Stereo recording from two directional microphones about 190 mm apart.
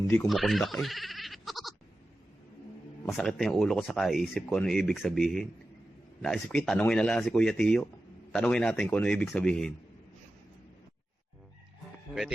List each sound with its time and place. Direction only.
0.3 s bleat: centre (ahead or behind)
3.1 s speech: centre (ahead or behind)